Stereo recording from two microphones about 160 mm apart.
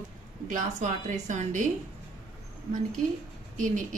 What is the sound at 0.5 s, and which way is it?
A woman's voice, 50° right (ahead or behind).